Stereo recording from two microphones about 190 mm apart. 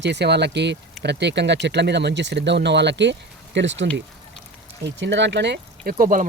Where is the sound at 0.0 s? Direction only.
65° right (ahead or behind).